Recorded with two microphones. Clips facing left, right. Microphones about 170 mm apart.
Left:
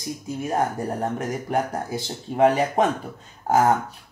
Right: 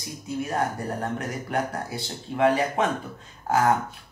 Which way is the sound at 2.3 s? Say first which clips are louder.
Left 3 dB; 40° left (ahead or behind).